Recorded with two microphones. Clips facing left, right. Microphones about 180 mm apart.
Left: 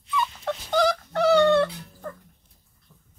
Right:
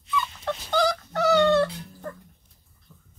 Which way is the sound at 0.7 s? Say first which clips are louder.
Left 2 dB; 25° left (ahead or behind).